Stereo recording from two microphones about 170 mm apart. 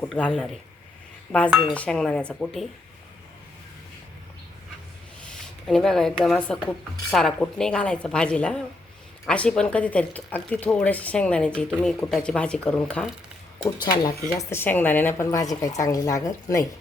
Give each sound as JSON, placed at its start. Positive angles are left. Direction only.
{"t": 0.1, "sound": "a woman's voice", "side_deg": 5}
{"t": 5.6, "sound": "a woman's voice", "side_deg": 5}
{"t": 13.7, "sound": "a woman's voice", "side_deg": 25}
{"t": 14.3, "sound": "a woman's voice", "side_deg": 15}